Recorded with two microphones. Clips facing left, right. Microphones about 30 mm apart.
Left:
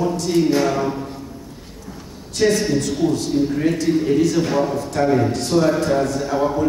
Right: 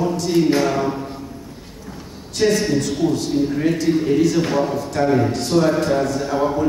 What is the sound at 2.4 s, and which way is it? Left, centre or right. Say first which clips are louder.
A man's voice: even; centre.